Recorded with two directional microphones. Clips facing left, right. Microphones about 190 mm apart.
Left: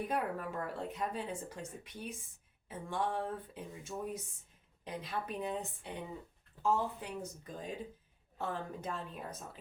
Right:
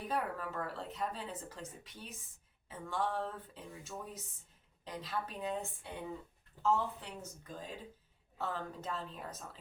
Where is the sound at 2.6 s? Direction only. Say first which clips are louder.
Left 1 dB; 10° left (ahead or behind).